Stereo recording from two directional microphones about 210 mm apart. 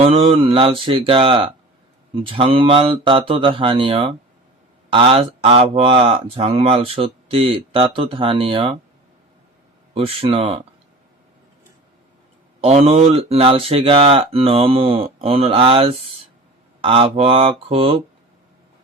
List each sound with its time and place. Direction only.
0.0 s speech: 25° right (ahead or behind)
9.9 s speech: 25° right (ahead or behind)
12.6 s speech: 30° right (ahead or behind)